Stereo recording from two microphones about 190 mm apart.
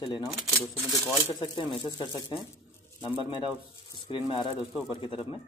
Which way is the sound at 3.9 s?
25° left (ahead or behind).